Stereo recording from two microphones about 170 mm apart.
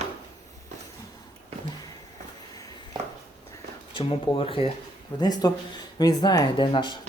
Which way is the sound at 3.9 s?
30° left (ahead or behind).